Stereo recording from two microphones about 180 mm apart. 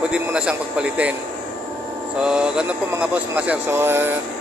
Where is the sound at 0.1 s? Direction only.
5° right (ahead or behind).